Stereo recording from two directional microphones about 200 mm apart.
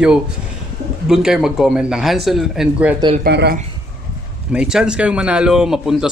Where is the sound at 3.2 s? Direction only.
55° right (ahead or behind).